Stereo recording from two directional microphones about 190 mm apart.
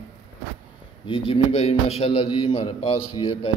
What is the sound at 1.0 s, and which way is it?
A man's voice, 30° left (ahead or behind).